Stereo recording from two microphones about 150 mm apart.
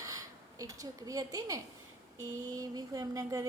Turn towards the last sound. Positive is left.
turn(degrees=-20)  # may be behind; listen again after turning